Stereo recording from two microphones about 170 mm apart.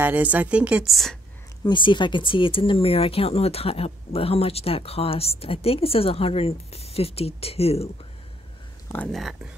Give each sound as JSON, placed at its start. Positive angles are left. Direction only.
{"t": 0.0, "sound": "a woman's voice", "side_deg": -10}
{"t": 1.6, "sound": "speech", "side_deg": 30}
{"t": 8.9, "sound": "speech", "side_deg": 5}